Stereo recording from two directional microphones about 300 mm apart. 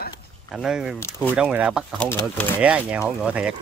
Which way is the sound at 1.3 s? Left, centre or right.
Centre.